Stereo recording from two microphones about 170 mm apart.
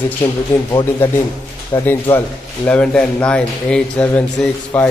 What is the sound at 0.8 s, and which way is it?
Speech, 15° left (ahead or behind).